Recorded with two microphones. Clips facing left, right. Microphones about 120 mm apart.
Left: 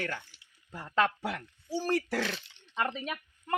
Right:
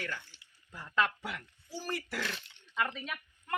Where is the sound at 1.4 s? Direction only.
65° left (ahead or behind).